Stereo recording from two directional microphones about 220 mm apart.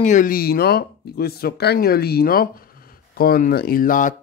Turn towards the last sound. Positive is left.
turn(degrees=35)  # may be behind; listen again after turning